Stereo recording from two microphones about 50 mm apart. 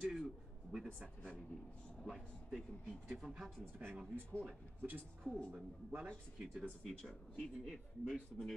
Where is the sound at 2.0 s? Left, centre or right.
Centre.